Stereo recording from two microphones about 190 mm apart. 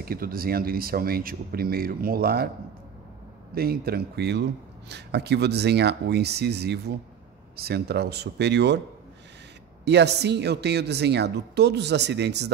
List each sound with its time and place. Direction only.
0.0 s speech: 50° right (ahead or behind)
3.5 s speech: 55° right (ahead or behind)
9.8 s speech: 60° right (ahead or behind)